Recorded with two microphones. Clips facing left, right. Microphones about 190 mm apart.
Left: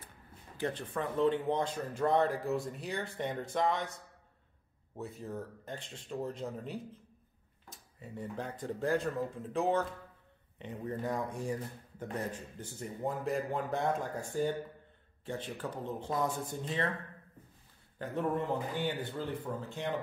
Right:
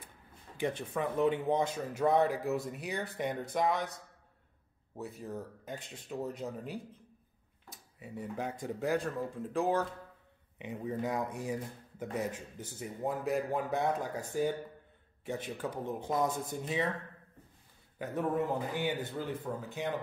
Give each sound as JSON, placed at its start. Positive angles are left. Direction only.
{"t": 0.6, "sound": "a man's voice", "side_deg": -15}
{"t": 5.2, "sound": "speech", "side_deg": -10}
{"t": 8.0, "sound": "a man's voice", "side_deg": -10}
{"t": 12.3, "sound": "a man's voice", "side_deg": -20}
{"t": 12.8, "sound": "a man's voice", "side_deg": -5}
{"t": 17.9, "sound": "a man's voice", "side_deg": -10}